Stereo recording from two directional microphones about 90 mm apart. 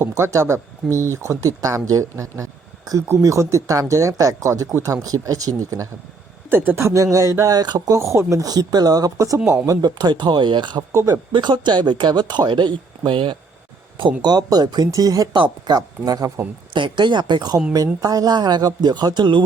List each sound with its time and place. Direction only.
0.0 s speech: 35° right (ahead or behind)
6.5 s speech: 25° right (ahead or behind); by 7.9 s 45° right (ahead or behind)
7.9 s speech: 30° right (ahead or behind)
9.6 s speech: 50° right (ahead or behind)
10.9 s speech: 40° right (ahead or behind)
11.3 s speech: 55° right (ahead or behind)
14.2 s speech: 50° right (ahead or behind)
15.3 s speech: 55° right (ahead or behind)
16.7 s speech: 60° right (ahead or behind)